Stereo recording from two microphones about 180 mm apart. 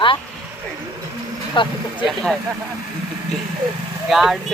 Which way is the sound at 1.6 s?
25° left (ahead or behind).